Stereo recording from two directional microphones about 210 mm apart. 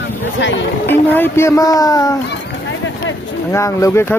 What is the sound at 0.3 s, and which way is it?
Speech, 60° left (ahead or behind).